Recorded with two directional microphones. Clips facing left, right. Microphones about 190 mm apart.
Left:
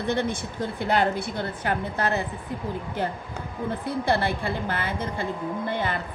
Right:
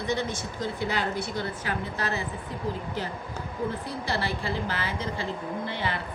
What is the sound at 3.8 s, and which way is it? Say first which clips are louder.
A woman's voice: left 6 dB; 55° left (ahead or behind).